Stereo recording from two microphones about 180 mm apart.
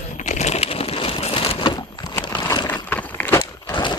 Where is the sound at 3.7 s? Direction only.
25° left (ahead or behind).